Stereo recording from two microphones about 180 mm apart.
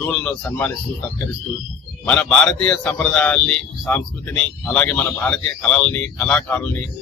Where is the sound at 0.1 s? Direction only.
10° left (ahead or behind).